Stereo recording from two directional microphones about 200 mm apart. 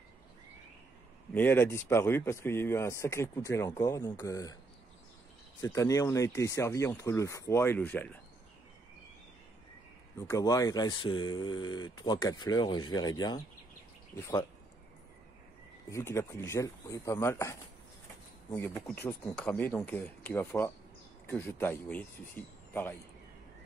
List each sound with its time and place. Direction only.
1.3 s speech: 10° left (ahead or behind)
5.6 s speech: 15° left (ahead or behind)
10.1 s speech: 15° left (ahead or behind)
15.9 s speech: 10° left (ahead or behind)